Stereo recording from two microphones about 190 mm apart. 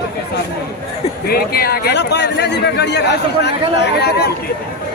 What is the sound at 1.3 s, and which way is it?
Speech, 55° left (ahead or behind).